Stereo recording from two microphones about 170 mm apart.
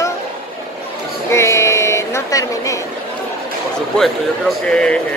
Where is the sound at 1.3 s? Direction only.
15° left (ahead or behind).